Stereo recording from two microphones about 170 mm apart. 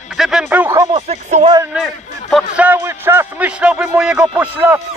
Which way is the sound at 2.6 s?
15° right (ahead or behind).